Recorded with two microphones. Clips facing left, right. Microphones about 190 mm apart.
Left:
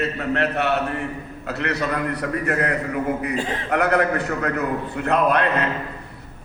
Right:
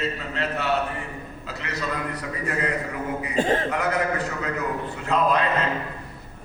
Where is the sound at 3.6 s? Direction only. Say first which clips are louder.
Left 5 dB; 65° left (ahead or behind).